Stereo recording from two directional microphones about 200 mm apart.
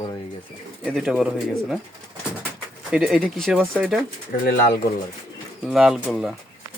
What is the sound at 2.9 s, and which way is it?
Speech, 5° right (ahead or behind).